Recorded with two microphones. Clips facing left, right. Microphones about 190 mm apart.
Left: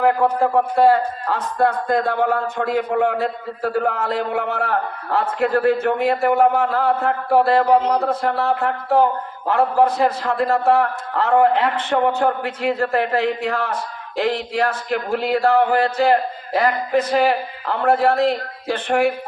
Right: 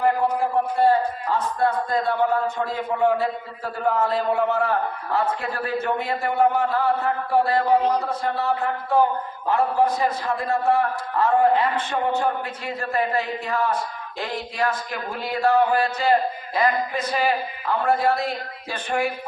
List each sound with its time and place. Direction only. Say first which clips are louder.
0.0 s a man's voice: left 4 dB; 70° left (ahead or behind)
1.6 s a man's voice: left 5 dB; 70° left (ahead or behind)